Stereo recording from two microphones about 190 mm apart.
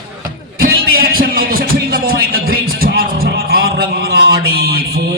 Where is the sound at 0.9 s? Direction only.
50° right (ahead or behind).